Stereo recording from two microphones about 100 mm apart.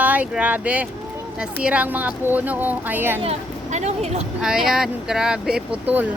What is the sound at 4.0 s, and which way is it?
Speech, 90° right.